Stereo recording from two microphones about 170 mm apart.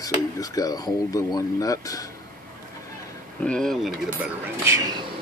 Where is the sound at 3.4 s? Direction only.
5° left (ahead or behind).